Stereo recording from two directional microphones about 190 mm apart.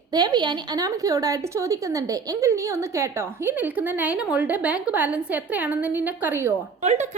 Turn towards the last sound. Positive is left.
turn(degrees=-35)  # may be behind; listen again after turning